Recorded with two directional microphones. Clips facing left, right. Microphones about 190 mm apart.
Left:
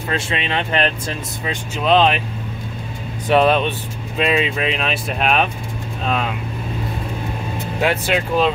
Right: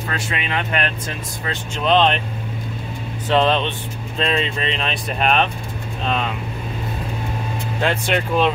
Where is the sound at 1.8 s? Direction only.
5° left (ahead or behind).